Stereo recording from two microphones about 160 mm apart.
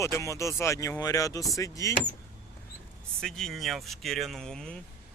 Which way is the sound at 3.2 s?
Centre (ahead or behind).